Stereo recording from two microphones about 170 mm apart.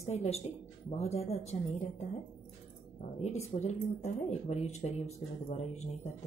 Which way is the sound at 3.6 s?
40° left (ahead or behind).